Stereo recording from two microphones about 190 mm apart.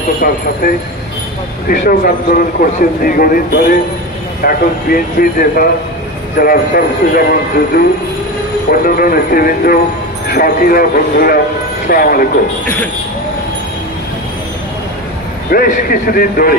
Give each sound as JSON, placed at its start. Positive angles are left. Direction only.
{"t": 1.7, "sound": "a man's voice", "side_deg": 50}
{"t": 15.5, "sound": "a man's voice", "side_deg": 50}